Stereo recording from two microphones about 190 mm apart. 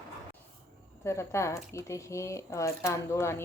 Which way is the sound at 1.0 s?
15° left (ahead or behind).